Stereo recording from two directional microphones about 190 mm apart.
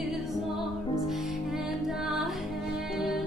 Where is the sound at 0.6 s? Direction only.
Centre (ahead or behind).